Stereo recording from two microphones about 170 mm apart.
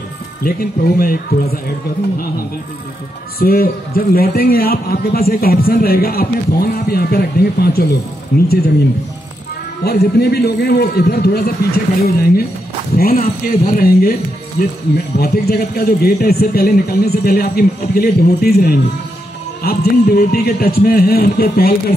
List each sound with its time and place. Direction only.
0.4 s a man's voice: 60° left (ahead or behind)
3.3 s a man's voice: 60° left (ahead or behind)
9.8 s a man's voice: 70° left (ahead or behind)